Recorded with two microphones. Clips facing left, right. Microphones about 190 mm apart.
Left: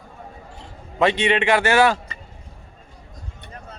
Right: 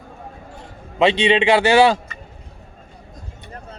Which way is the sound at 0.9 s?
25° right (ahead or behind).